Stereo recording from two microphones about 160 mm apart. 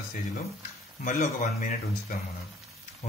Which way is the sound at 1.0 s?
50° left (ahead or behind).